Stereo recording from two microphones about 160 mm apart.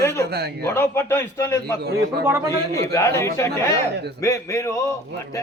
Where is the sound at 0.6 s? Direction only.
15° left (ahead or behind).